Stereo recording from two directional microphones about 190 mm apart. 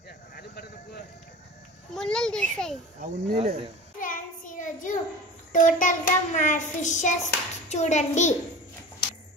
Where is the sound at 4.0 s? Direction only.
45° left (ahead or behind).